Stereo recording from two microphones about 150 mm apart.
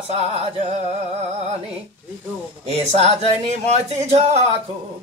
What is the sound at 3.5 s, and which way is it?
Speech, 45° right (ahead or behind).